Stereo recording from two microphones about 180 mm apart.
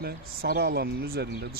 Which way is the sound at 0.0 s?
60° right (ahead or behind).